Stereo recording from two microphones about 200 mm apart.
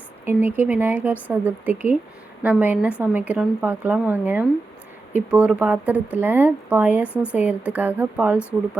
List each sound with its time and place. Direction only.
0.5 s a woman's voice: 10° right (ahead or behind)
7.1 s a woman's voice: 10° left (ahead or behind)
7.3 s a woman's voice: 10° right (ahead or behind)